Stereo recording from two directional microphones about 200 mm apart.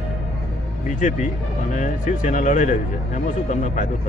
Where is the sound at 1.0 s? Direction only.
40° left (ahead or behind).